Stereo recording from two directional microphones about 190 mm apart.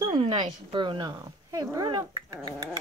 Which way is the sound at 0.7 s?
25° right (ahead or behind).